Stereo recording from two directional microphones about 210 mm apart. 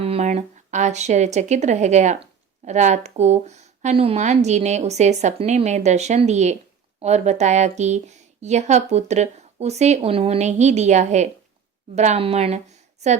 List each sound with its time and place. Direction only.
0.0 s a woman's voice: 30° right (ahead or behind)